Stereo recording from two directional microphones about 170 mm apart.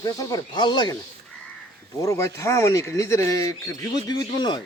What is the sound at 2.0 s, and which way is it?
Speech, 20° left (ahead or behind).